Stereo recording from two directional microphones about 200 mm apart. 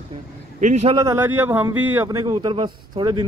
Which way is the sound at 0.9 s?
15° right (ahead or behind).